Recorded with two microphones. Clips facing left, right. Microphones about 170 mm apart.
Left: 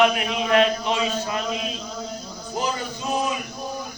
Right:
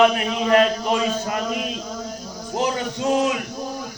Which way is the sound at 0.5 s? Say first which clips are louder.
Right 2 dB; 45° right (ahead or behind).